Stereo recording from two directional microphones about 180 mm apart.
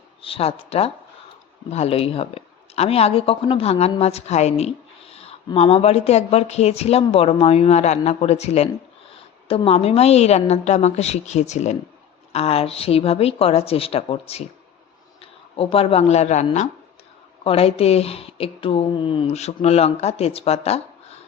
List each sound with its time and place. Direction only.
0.2 s speech: 30° left (ahead or behind)